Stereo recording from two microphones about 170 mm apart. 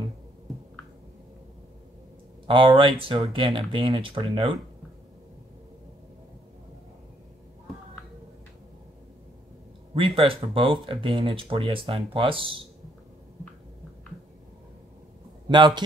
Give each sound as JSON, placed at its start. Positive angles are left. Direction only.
{"t": 2.4, "sound": "speech", "side_deg": -30}
{"t": 9.9, "sound": "speech", "side_deg": -30}
{"t": 15.4, "sound": "speech", "side_deg": -25}